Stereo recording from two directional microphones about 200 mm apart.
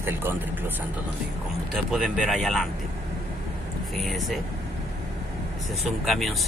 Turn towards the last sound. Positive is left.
turn(degrees=0)  # may be behind; listen again after turning